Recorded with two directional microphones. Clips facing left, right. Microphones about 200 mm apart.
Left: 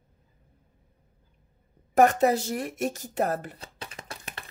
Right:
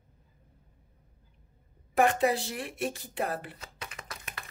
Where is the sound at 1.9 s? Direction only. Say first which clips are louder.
Left 5 dB; 40° left (ahead or behind).